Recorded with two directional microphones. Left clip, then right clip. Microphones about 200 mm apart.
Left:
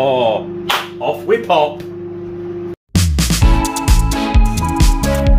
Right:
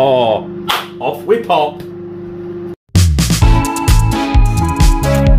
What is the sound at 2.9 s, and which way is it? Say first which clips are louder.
Music: right 1 dB; centre (ahead or behind).